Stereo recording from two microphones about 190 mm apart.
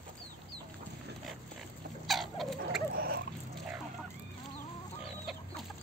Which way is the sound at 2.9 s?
50° right (ahead or behind).